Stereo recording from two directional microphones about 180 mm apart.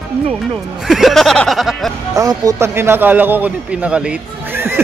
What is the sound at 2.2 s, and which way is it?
Speech, 20° right (ahead or behind).